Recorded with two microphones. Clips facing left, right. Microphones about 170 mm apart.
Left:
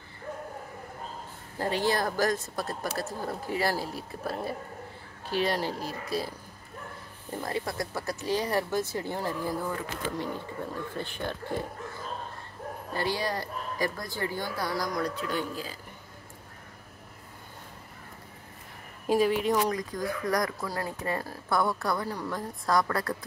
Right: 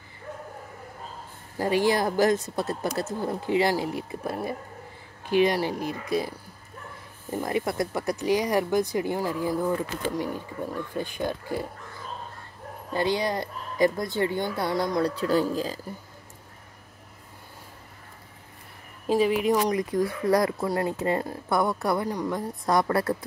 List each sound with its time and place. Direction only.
1.6 s speech: 15° right (ahead or behind)
12.9 s speech: 20° right (ahead or behind); by 15.8 s 40° right (ahead or behind)
19.0 s a woman's voice: centre (ahead or behind)
19.8 s speech: 25° right (ahead or behind)